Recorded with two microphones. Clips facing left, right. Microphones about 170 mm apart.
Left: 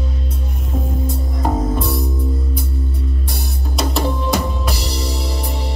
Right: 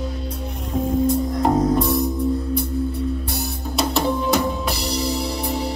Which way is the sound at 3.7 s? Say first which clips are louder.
Even; centre (ahead or behind).